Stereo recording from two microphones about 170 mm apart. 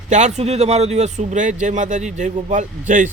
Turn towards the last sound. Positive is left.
turn(degrees=-50)  # may be behind; listen again after turning